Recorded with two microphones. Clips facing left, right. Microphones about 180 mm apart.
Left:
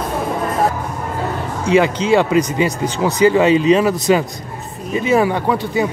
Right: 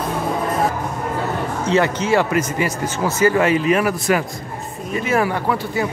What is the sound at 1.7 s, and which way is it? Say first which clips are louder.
Speech: left 4 dB; 15° left (ahead or behind).